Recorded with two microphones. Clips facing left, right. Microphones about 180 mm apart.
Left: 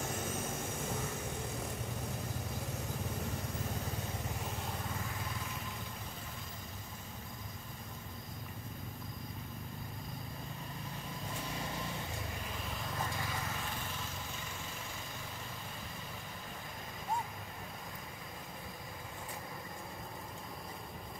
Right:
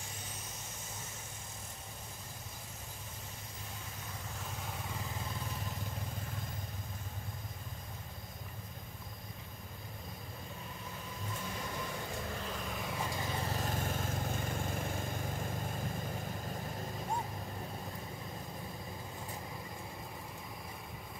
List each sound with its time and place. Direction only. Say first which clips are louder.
0.4 s vehicle: left 10 dB; 55° left (ahead or behind)
13.2 s vehicle: right 3 dB; 30° right (ahead or behind); by 15.5 s 50° right (ahead or behind)